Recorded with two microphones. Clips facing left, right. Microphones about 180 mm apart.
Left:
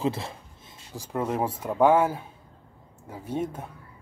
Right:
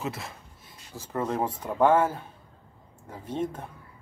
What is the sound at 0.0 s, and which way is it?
Speech, 30° left (ahead or behind).